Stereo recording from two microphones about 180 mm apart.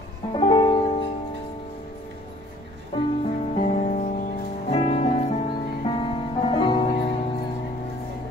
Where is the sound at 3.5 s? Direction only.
40° left (ahead or behind).